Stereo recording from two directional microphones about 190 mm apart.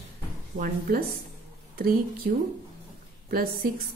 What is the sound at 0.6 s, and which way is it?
Speech, 50° right (ahead or behind).